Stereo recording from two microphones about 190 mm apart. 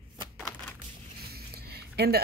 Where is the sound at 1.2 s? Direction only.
55° right (ahead or behind).